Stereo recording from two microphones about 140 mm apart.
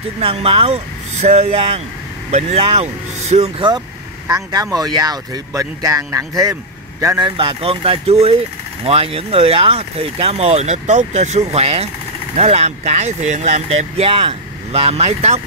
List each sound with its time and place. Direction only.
0.2 s speech: 45° right (ahead or behind)
4.3 s speech: 25° right (ahead or behind)
7.2 s speech: 35° right (ahead or behind)